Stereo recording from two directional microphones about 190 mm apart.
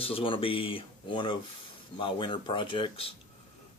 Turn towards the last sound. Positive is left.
turn(degrees=30)  # may be behind; listen again after turning